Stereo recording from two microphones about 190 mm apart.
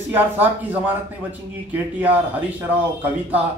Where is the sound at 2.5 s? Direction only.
10° right (ahead or behind).